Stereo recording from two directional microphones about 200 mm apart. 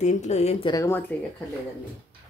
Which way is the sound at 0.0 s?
35° left (ahead or behind).